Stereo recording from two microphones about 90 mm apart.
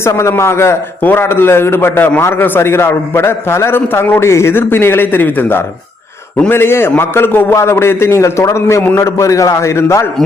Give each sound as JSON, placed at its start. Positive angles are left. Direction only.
{"t": 0.0, "sound": "a man's voice", "side_deg": 30}